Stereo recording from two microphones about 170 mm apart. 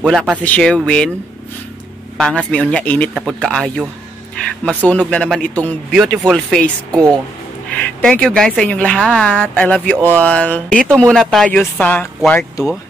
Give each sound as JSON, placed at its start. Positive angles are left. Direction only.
{"t": 0.0, "sound": "speech", "side_deg": 0}
{"t": 2.1, "sound": "a woman's voice", "side_deg": 5}
{"t": 6.9, "sound": "speech", "side_deg": -20}
{"t": 7.8, "sound": "a woman's voice", "side_deg": 5}